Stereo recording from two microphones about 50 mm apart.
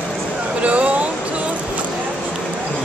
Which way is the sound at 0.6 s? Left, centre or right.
Right.